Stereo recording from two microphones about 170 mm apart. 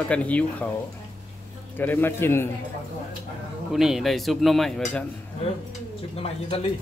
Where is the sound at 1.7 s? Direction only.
10° left (ahead or behind).